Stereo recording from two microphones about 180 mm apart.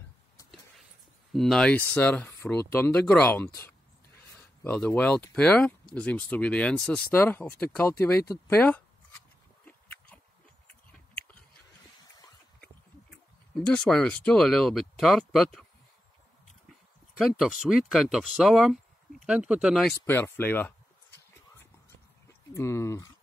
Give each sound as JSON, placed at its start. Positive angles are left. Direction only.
{"t": 1.3, "sound": "speech", "side_deg": 0}
{"t": 9.7, "sound": "a sound", "side_deg": 10}
{"t": 12.5, "sound": "speech", "side_deg": 5}
{"t": 17.4, "sound": "speech", "side_deg": 0}
{"t": 19.9, "sound": "speech", "side_deg": 10}
{"t": 22.5, "sound": "speech", "side_deg": 15}